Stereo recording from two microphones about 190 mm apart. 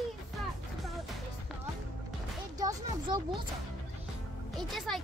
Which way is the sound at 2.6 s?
20° right (ahead or behind).